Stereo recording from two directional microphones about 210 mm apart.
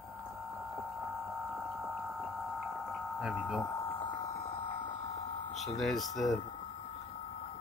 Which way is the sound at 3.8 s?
25° left (ahead or behind).